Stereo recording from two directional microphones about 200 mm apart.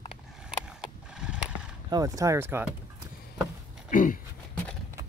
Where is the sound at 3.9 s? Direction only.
40° left (ahead or behind).